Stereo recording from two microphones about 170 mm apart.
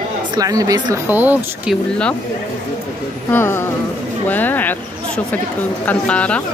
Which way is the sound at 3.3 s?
15° left (ahead or behind).